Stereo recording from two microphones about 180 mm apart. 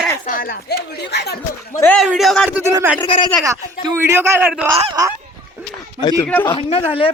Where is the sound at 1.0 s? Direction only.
65° left (ahead or behind).